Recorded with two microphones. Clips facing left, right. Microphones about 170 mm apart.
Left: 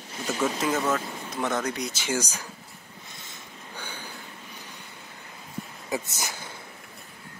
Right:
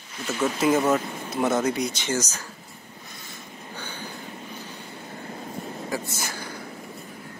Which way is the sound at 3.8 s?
10° left (ahead or behind).